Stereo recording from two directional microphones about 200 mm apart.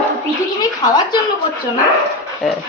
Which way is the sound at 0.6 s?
20° left (ahead or behind).